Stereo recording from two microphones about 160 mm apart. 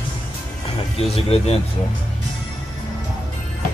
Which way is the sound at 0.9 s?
40° left (ahead or behind).